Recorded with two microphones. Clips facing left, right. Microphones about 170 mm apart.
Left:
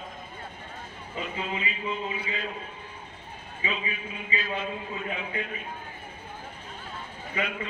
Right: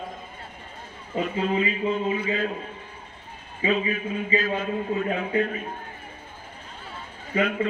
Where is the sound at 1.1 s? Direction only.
40° right (ahead or behind).